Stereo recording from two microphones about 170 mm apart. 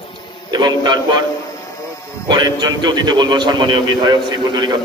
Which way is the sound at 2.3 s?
25° right (ahead or behind).